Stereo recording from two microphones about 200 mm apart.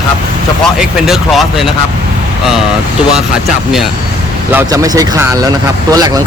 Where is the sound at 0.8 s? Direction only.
Centre (ahead or behind).